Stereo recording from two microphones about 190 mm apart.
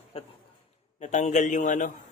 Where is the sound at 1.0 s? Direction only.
40° left (ahead or behind).